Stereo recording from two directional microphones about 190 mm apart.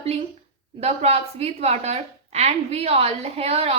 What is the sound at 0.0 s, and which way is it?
A woman's voice, 35° right (ahead or behind).